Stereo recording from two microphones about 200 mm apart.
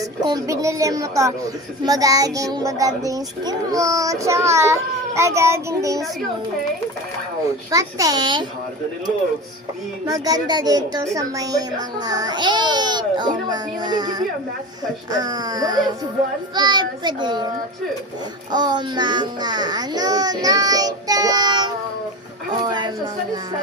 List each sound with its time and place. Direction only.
0.0 s child singing: 20° right (ahead or behind)
7.7 s a woman's voice: 15° right (ahead or behind)
10.1 s a woman's voice: 20° right (ahead or behind)
18.5 s a woman's voice: 20° right (ahead or behind)